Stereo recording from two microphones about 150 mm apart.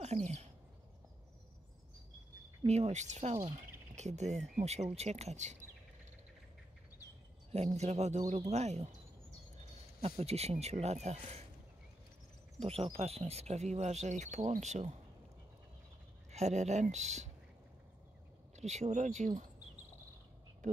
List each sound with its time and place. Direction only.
0.0 s a sound: 45° right (ahead or behind)
2.6 s speech: 45° right (ahead or behind)
7.5 s speech: 45° right (ahead or behind)
10.0 s speech: 45° right (ahead or behind)
12.5 s speech: 40° right (ahead or behind)
16.3 s speech: 50° right (ahead or behind)
18.6 s speech: 50° right (ahead or behind)